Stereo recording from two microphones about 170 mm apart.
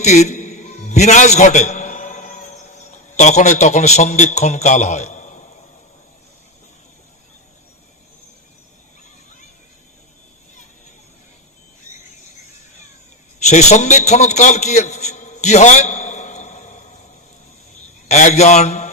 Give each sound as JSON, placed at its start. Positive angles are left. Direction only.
{"t": 0.0, "sound": "a sound", "side_deg": 45}
{"t": 13.5, "sound": "a man's voice", "side_deg": 45}
{"t": 18.1, "sound": "a man's voice", "side_deg": 45}